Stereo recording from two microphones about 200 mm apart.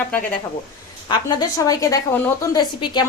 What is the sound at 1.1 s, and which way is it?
A woman's voice, 20° left (ahead or behind).